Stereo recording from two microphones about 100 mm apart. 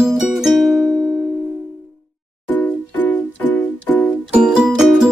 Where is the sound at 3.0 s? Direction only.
15° left (ahead or behind).